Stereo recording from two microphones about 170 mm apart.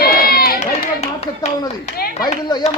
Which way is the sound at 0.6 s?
40° left (ahead or behind).